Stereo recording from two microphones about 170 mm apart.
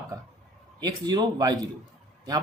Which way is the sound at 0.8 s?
25° right (ahead or behind).